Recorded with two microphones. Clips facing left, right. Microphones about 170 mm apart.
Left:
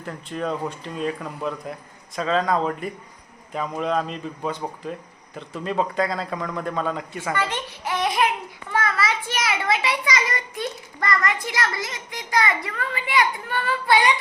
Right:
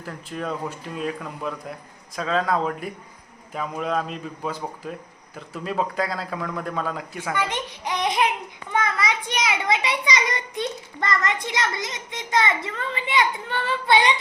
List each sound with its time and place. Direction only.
0.0 s a man's voice: centre (ahead or behind)
7.3 s babbling: 15° right (ahead or behind)
8.7 s a child's voice: 20° right (ahead or behind)